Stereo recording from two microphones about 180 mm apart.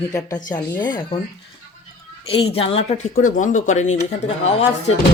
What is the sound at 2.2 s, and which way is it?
Speech, 30° left (ahead or behind).